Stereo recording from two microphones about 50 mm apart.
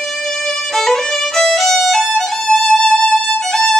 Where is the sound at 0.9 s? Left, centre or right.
Centre.